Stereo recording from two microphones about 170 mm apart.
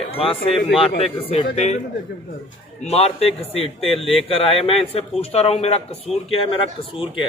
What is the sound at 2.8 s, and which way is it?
Speech, 35° left (ahead or behind).